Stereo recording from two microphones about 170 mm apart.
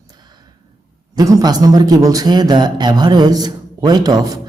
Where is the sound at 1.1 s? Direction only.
20° right (ahead or behind).